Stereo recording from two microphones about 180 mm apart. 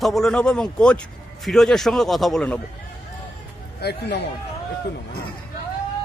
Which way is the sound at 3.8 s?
70° left (ahead or behind).